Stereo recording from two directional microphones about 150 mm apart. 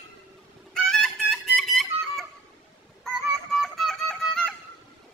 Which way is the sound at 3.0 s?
Centre (ahead or behind).